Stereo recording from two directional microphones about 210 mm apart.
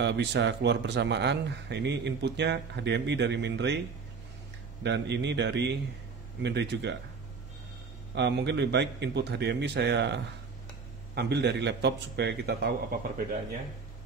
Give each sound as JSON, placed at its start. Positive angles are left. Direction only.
{"t": 0.0, "sound": "a man's voice", "side_deg": -55}
{"t": 4.8, "sound": "a man's voice", "side_deg": -55}
{"t": 8.1, "sound": "a man's voice", "side_deg": -55}